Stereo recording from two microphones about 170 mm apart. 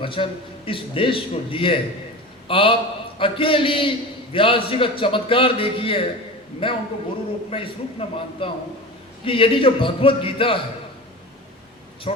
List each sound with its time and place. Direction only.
0.0 s a man's voice: 30° left (ahead or behind)
12.1 s a man's voice: 35° left (ahead or behind)